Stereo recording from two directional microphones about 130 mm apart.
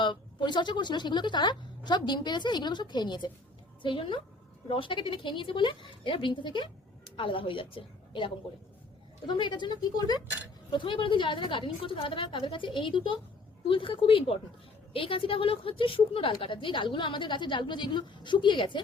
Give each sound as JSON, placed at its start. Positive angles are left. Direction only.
{"t": 0.0, "sound": "a woman's voice", "side_deg": 35}